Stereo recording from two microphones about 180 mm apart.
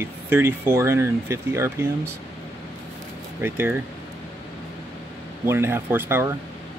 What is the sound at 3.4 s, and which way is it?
Speech, 10° right (ahead or behind).